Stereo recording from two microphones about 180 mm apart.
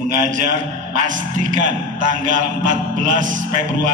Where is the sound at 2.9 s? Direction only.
45° right (ahead or behind).